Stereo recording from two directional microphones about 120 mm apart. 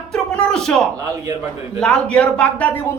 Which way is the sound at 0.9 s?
30° right (ahead or behind).